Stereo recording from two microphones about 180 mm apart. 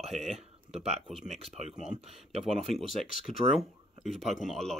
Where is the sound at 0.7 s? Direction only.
35° right (ahead or behind).